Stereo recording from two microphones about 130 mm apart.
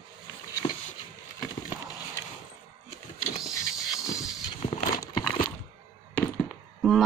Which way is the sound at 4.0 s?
25° left (ahead or behind).